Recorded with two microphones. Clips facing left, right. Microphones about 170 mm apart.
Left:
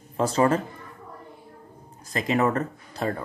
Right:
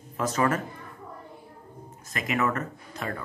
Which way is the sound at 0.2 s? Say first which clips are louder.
Left 4 dB; 30° left (ahead or behind).